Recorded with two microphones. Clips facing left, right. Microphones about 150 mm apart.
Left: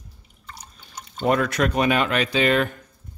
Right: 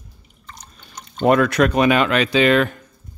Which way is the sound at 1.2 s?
70° right (ahead or behind).